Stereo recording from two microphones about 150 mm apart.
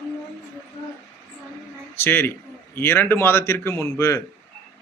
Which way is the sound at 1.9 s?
15° left (ahead or behind).